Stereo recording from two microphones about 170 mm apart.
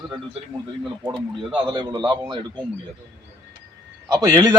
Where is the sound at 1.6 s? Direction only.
25° right (ahead or behind).